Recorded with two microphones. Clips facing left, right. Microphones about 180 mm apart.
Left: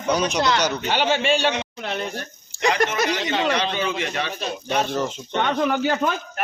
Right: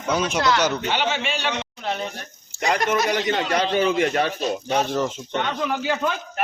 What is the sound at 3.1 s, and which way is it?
Speech, 55° right (ahead or behind).